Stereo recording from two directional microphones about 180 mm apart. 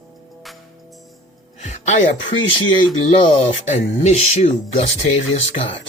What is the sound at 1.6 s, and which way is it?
Speech, 40° left (ahead or behind).